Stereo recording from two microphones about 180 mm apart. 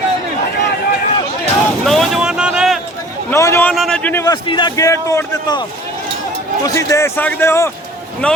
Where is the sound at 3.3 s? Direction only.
15° left (ahead or behind).